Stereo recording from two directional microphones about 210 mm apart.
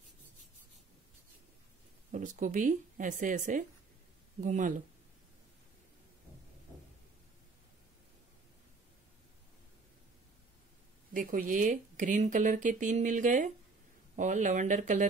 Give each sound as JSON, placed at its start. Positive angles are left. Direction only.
{"t": 2.1, "sound": "speech", "side_deg": -35}
{"t": 11.1, "sound": "speech", "side_deg": -40}